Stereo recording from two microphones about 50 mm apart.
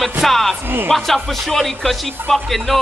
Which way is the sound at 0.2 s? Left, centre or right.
Centre.